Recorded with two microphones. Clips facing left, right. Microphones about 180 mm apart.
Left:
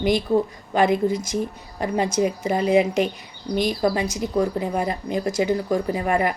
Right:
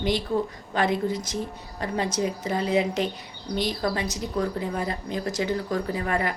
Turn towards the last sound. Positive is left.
turn(degrees=20)  # may be behind; listen again after turning